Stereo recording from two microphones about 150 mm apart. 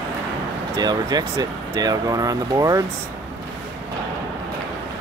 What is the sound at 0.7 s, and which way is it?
Speech, 25° right (ahead or behind).